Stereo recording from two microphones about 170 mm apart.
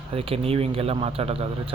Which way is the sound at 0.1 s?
35° right (ahead or behind).